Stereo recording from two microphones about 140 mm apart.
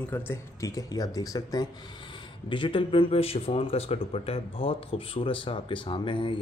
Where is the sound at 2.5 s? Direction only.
35° left (ahead or behind).